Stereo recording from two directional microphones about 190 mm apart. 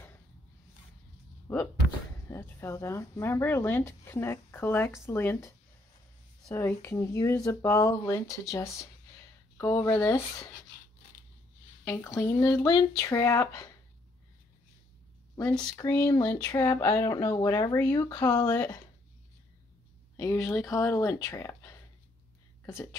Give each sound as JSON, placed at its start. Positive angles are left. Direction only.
{"t": 1.5, "sound": "speech", "side_deg": 10}
{"t": 6.5, "sound": "speech", "side_deg": 15}
{"t": 11.9, "sound": "speech", "side_deg": 15}
{"t": 15.7, "sound": "speech", "side_deg": 15}
{"t": 20.2, "sound": "speech", "side_deg": 15}